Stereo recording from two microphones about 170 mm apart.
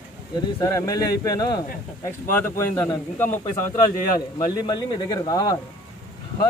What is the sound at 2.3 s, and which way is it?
Speech, 10° left (ahead or behind).